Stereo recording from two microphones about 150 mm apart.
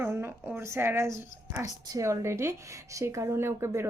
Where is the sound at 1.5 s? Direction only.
20° right (ahead or behind).